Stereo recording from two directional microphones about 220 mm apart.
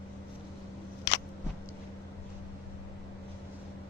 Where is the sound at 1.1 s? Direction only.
50° left (ahead or behind).